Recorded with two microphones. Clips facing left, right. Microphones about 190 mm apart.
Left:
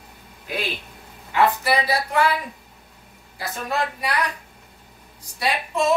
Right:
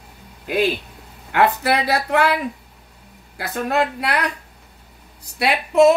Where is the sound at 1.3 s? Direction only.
65° right (ahead or behind).